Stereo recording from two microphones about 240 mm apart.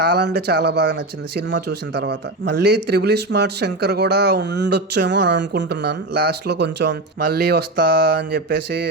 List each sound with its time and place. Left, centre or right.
0.0 s speech: right